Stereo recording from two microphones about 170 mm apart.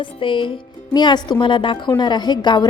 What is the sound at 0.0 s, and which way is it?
A woman's voice, 30° left (ahead or behind).